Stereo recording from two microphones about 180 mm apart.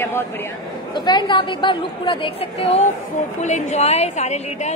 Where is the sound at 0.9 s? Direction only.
25° left (ahead or behind).